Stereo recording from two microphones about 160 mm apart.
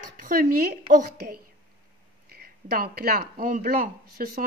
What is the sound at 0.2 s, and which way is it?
Speech, 65° right (ahead or behind).